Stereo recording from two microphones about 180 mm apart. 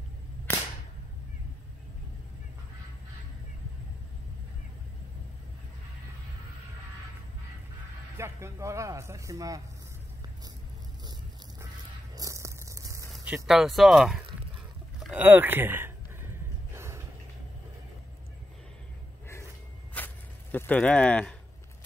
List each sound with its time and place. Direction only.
0.5 s whip: 10° left (ahead or behind)
8.2 s speech: 15° right (ahead or behind)
12.2 s a sound: 15° right (ahead or behind)
13.1 s speech: 5° right (ahead or behind)
15.0 s a sound: 5° right (ahead or behind)
20.0 s walk: 10° left (ahead or behind)
20.5 s speech: 10° left (ahead or behind)